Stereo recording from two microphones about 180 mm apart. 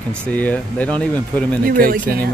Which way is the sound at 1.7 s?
55° right (ahead or behind).